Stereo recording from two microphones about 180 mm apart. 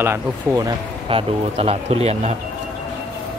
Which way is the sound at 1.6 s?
35° right (ahead or behind).